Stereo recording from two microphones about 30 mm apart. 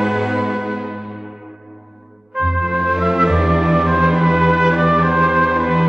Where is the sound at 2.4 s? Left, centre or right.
Centre.